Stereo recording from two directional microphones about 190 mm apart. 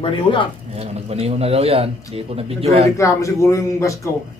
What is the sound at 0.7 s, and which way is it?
Speech, 35° right (ahead or behind).